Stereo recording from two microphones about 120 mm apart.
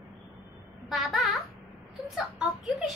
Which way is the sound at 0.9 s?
Centre (ahead or behind).